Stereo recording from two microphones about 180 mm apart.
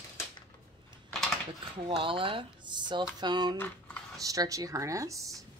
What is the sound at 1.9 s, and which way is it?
Speech, 30° right (ahead or behind).